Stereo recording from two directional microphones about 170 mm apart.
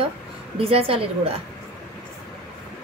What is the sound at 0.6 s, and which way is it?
Speech, 35° right (ahead or behind).